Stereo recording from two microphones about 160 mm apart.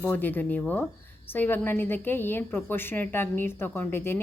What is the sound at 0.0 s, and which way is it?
A woman's voice, 10° left (ahead or behind).